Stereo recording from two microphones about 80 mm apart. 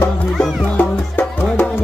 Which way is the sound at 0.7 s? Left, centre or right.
Centre.